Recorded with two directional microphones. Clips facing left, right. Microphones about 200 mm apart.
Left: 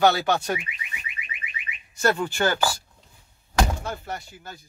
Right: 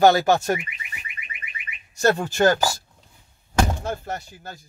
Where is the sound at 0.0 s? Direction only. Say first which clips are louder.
Right 4 dB; 45° right (ahead or behind).